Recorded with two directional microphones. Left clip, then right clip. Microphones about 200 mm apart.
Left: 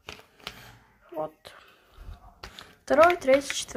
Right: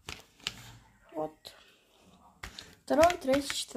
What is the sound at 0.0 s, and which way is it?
Typewriter, 30° right (ahead or behind).